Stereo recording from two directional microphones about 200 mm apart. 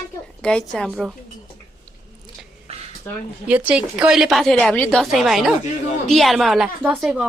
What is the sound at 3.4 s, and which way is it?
A woman's voice, 5° right (ahead or behind).